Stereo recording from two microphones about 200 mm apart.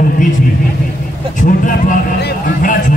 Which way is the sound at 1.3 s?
40° left (ahead or behind).